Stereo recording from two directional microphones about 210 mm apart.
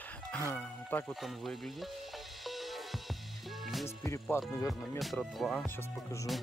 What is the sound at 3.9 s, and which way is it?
Speech, 15° left (ahead or behind).